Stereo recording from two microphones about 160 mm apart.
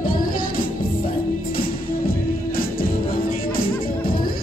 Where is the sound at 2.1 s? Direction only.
65° left (ahead or behind).